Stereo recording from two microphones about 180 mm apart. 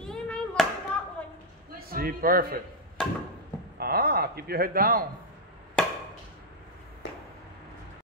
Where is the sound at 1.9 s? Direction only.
55° right (ahead or behind).